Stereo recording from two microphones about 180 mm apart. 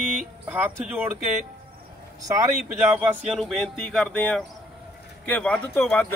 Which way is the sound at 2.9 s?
5° right (ahead or behind).